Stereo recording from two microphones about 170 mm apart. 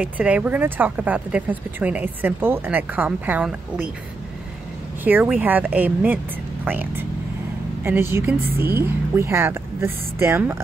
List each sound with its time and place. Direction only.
0.0 s speech: 10° right (ahead or behind)
5.0 s speech: 10° right (ahead or behind)